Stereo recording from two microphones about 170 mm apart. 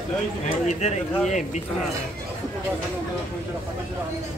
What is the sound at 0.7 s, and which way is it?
Speech, 45° left (ahead or behind).